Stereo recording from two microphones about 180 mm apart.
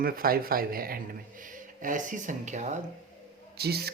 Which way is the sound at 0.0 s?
55° right (ahead or behind).